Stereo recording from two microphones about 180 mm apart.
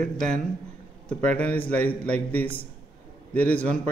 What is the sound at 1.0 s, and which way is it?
A man's voice, 5° left (ahead or behind).